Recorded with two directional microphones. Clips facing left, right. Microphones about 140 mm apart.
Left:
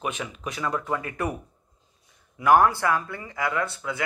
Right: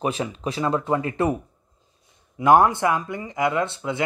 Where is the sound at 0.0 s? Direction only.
30° right (ahead or behind).